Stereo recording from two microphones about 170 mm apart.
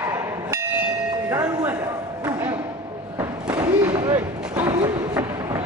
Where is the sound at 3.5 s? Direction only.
25° right (ahead or behind).